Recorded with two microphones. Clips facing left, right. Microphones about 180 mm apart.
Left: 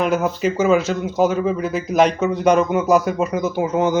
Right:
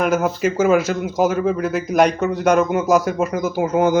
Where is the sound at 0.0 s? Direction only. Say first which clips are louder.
Right 1 dB; 5° right (ahead or behind).